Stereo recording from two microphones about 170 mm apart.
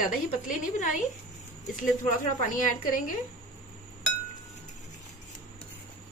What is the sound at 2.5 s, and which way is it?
Speech, 50° left (ahead or behind).